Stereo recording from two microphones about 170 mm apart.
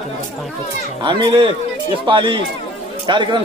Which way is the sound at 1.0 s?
30° right (ahead or behind).